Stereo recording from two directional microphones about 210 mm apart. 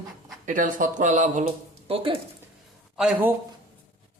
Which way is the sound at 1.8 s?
25° right (ahead or behind).